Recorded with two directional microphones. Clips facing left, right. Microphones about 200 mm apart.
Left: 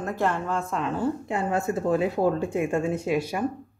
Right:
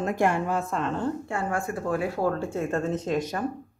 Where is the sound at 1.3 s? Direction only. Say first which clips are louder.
Left 3 dB; 20° left (ahead or behind).